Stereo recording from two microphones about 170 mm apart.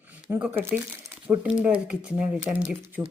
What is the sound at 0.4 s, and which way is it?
Speech, 10° right (ahead or behind).